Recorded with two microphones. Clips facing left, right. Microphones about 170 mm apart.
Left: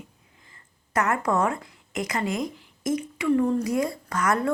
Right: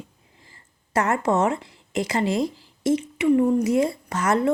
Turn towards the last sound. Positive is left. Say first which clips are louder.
# right 3 dB
turn(degrees=-25)  # may be behind; listen again after turning